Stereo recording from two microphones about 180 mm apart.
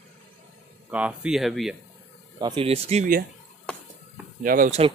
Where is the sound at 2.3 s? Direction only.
25° right (ahead or behind).